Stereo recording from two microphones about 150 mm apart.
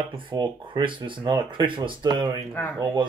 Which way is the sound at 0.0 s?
35° right (ahead or behind).